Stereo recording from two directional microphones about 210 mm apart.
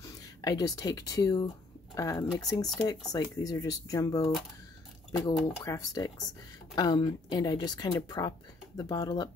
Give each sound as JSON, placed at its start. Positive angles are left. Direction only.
{"t": 0.4, "sound": "speech", "side_deg": 20}